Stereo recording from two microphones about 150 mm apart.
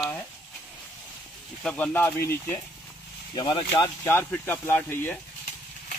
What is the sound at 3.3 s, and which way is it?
Speech, 35° left (ahead or behind).